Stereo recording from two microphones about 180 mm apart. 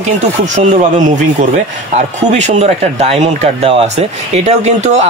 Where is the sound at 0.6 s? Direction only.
40° right (ahead or behind).